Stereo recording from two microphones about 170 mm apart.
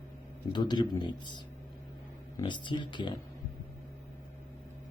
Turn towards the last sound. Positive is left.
turn(degrees=25)  # may be behind; listen again after turning